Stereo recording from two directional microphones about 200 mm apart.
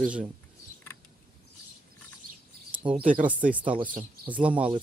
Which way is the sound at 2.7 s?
5° right (ahead or behind).